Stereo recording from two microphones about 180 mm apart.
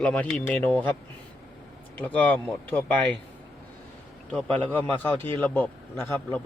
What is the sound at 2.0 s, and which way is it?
Speech, 10° left (ahead or behind).